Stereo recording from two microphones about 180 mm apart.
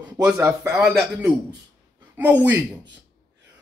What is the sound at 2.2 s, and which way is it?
Speech, 10° right (ahead or behind).